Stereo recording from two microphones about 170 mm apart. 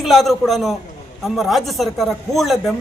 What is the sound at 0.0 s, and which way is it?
A man's voice, centre (ahead or behind).